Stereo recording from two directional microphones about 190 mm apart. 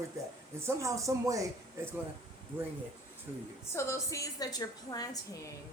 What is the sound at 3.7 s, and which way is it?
A woman's voice, 15° left (ahead or behind).